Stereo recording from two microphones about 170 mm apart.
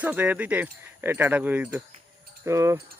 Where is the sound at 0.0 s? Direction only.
10° right (ahead or behind).